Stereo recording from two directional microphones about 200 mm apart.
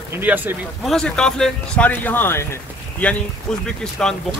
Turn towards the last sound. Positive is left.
turn(degrees=5)  # may be behind; listen again after turning